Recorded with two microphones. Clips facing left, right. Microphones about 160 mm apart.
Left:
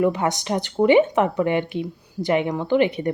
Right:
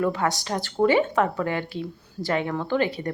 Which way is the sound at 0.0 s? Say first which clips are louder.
Left 4 dB; 20° left (ahead or behind).